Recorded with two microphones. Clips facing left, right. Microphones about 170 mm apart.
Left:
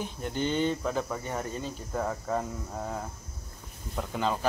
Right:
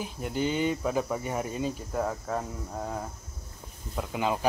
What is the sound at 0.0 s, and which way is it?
Speech, 5° right (ahead or behind).